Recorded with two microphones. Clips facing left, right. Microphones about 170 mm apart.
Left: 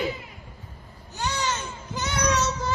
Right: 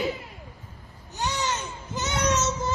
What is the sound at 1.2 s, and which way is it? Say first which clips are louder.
Baby cry: even; 20° right (ahead or behind).